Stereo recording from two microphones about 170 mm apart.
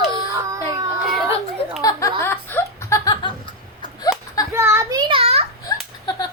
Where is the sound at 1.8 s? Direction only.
20° left (ahead or behind).